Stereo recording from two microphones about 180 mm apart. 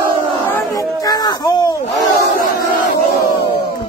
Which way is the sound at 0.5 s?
15° left (ahead or behind).